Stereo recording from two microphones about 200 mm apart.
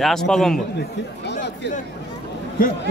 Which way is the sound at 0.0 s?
Centre (ahead or behind).